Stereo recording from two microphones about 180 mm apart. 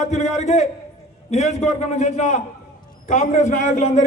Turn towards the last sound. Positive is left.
turn(degrees=40)  # may be behind; listen again after turning